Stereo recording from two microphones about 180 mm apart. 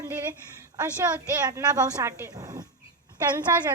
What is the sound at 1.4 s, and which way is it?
A woman's voice, 20° right (ahead or behind).